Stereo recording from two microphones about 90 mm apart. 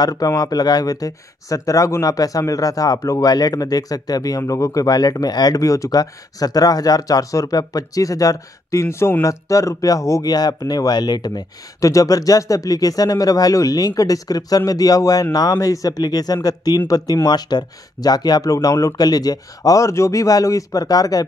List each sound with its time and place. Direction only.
0.0 s speech: 45° left (ahead or behind)